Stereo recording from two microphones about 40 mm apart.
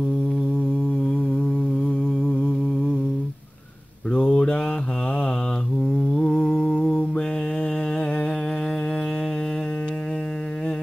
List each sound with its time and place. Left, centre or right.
4.1 s mantra: centre
6.3 s humming: centre
6.6 s mantra: left
8.0 s humming: left